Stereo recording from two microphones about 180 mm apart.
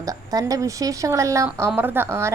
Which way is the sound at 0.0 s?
20° right (ahead or behind).